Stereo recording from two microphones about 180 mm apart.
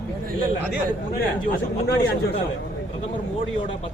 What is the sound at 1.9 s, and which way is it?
Speech, 65° left (ahead or behind).